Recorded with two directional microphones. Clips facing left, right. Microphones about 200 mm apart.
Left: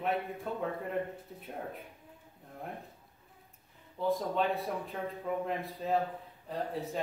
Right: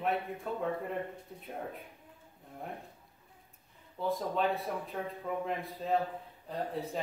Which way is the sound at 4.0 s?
Centre (ahead or behind).